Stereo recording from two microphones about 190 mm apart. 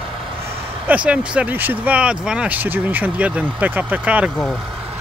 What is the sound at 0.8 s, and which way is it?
Speech, 5° right (ahead or behind).